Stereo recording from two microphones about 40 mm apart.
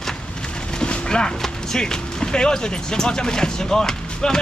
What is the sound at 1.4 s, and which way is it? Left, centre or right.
Speech, centre.